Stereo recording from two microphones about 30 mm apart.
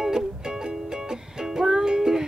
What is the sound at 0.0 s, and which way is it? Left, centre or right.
Music, centre.